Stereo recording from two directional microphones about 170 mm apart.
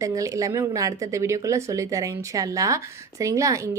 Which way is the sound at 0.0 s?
20° right (ahead or behind).